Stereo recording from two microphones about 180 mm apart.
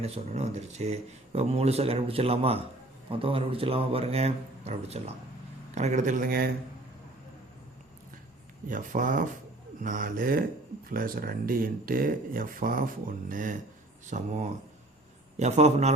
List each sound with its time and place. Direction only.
0.0 s speech: 35° right (ahead or behind); by 6.5 s 55° right (ahead or behind)
8.6 s speech: 45° right (ahead or behind)